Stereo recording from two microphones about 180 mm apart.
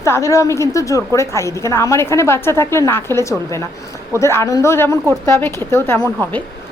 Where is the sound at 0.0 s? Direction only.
15° left (ahead or behind).